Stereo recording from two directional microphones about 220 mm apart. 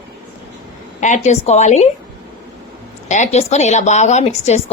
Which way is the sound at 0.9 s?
30° left (ahead or behind).